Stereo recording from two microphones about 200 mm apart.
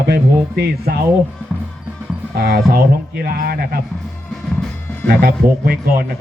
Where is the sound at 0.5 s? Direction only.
50° right (ahead or behind).